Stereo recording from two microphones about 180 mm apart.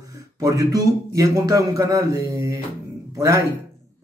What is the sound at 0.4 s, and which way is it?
Speech, 20° right (ahead or behind).